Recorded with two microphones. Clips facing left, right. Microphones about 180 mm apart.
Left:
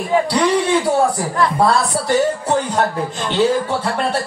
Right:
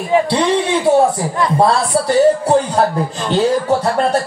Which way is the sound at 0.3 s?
25° right (ahead or behind).